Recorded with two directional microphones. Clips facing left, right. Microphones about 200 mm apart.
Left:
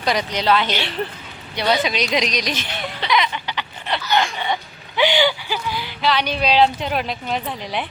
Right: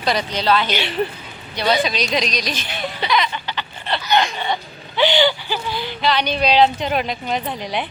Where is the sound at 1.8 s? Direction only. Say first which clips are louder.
Even; 20° left (ahead or behind).